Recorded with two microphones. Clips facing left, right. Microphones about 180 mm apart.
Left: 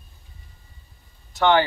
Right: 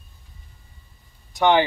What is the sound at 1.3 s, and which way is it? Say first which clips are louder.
Speech: right 1 dB; 15° right (ahead or behind).